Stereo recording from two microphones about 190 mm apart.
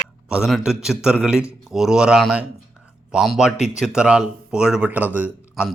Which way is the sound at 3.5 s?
35° left (ahead or behind).